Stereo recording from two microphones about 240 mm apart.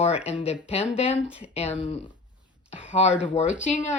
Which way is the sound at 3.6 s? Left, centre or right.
Left.